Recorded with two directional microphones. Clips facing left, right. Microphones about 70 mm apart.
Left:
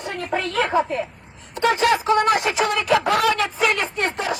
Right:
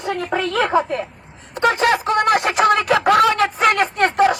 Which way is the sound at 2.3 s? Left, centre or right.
Right.